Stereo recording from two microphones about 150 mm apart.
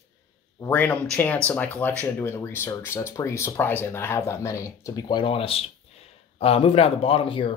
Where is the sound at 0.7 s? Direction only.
10° left (ahead or behind); by 7.5 s 35° left (ahead or behind).